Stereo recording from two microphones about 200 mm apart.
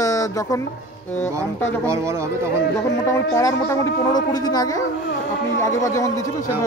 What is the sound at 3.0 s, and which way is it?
Speech, 15° left (ahead or behind).